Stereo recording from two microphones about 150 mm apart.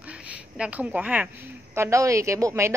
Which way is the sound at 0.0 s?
10° right (ahead or behind).